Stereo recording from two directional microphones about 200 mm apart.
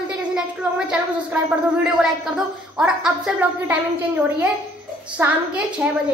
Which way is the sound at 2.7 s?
5° right (ahead or behind).